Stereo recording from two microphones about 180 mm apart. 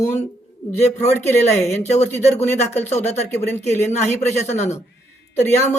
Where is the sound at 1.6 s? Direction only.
40° left (ahead or behind).